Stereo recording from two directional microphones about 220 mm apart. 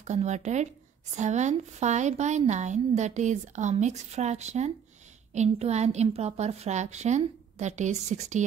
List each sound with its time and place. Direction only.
0.0 s speech: 30° right (ahead or behind)